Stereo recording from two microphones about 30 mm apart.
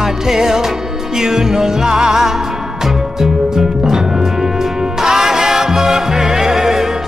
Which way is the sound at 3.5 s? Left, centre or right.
Centre.